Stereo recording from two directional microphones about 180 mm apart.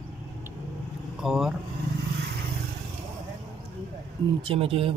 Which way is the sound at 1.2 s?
Centre (ahead or behind).